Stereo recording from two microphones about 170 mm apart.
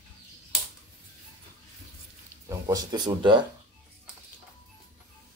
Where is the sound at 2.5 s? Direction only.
25° right (ahead or behind).